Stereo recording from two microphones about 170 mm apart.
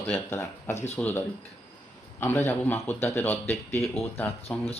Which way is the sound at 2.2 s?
15° left (ahead or behind).